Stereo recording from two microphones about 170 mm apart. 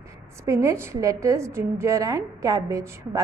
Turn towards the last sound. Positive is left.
turn(degrees=-20)  # may be behind; listen again after turning